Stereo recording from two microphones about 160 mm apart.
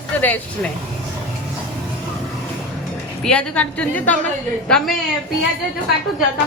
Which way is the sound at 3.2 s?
5° left (ahead or behind).